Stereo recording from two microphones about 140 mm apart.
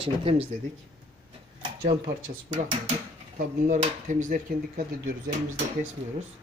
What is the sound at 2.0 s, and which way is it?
Speech, 65° right (ahead or behind).